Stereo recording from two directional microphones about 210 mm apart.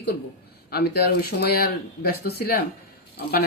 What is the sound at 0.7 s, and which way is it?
Speech, 50° left (ahead or behind).